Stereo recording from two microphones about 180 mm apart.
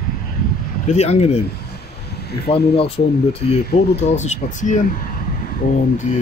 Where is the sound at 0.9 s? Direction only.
35° left (ahead or behind).